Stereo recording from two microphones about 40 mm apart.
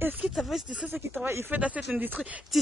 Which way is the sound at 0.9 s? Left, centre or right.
Right.